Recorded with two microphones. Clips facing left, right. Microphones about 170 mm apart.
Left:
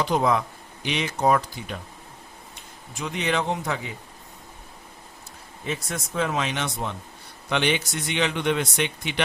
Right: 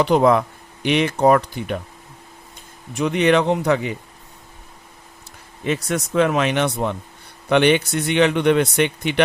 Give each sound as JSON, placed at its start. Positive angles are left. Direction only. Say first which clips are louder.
{"t": 0.0, "sound": "speech", "louder": "right 7 dB", "side_deg": -65}
{"t": 2.9, "sound": "speech", "louder": "right 10 dB", "side_deg": -65}
{"t": 5.6, "sound": "speech", "louder": "right 8 dB", "side_deg": -70}